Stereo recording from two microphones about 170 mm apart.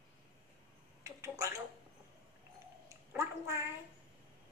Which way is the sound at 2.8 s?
15° right (ahead or behind).